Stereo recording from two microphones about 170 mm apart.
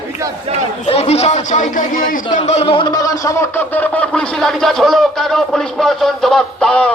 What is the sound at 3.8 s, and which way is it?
Speech, 5° left (ahead or behind).